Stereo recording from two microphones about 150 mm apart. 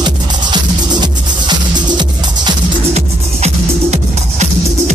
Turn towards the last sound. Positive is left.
turn(degrees=-50)  # may be behind; listen again after turning